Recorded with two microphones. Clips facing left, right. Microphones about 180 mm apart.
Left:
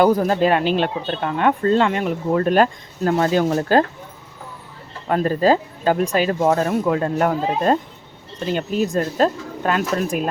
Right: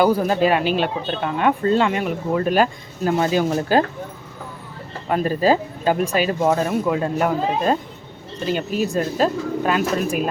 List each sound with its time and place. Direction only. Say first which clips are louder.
0.0 s speech: left 1 dB; 5° right (ahead or behind)
5.0 s speech: left 1 dB; 10° right (ahead or behind)